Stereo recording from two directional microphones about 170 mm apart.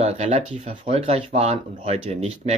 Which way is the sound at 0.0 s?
45° right (ahead or behind).